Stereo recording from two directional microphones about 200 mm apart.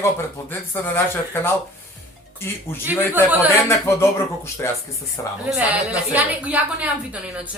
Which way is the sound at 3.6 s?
15° left (ahead or behind).